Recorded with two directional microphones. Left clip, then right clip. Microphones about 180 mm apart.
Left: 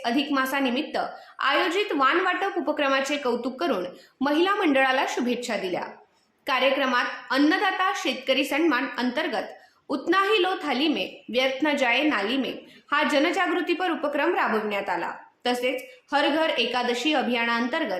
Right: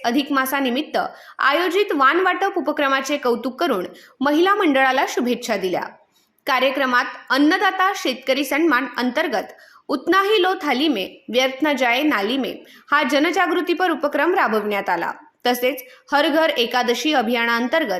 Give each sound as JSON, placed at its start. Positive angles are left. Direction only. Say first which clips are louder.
{"t": 0.0, "sound": "a woman's voice", "louder": "right 5 dB", "side_deg": -40}